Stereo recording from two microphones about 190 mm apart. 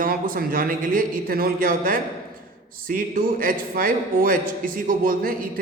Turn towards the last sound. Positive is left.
turn(degrees=-50)  # may be behind; listen again after turning